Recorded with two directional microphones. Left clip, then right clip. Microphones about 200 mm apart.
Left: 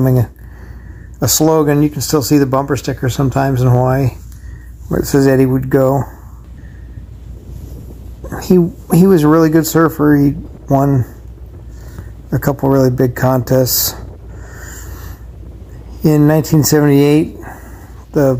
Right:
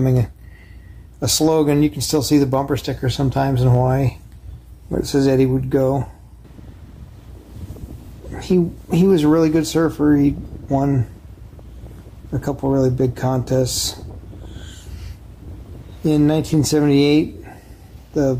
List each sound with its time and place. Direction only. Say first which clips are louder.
0.0 s speech: left 5 dB; 15° left (ahead or behind)
8.5 s speech: left 6 dB; 20° left (ahead or behind)
12.3 s speech: left 7 dB; 20° left (ahead or behind)
12.9 s speech: left 5 dB; centre (ahead or behind)
13.5 s speech: left 6 dB; 20° left (ahead or behind)
16.1 s speech: left 5 dB; 20° left (ahead or behind)
16.8 s speech: left 3 dB; centre (ahead or behind)
18.1 s speech: left 6 dB; 15° left (ahead or behind)